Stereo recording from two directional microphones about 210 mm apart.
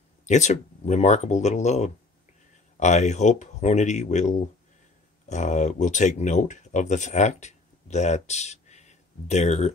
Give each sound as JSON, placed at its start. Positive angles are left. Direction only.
{"t": 0.3, "sound": "speech", "side_deg": 35}